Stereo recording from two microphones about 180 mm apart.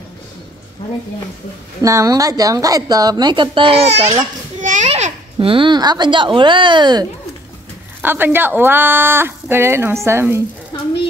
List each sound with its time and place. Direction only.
1.8 s a woman's voice: 15° right (ahead or behind)
8.0 s speech: 10° right (ahead or behind)